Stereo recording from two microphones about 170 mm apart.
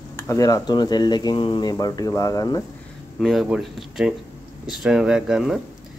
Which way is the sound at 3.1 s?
Centre (ahead or behind).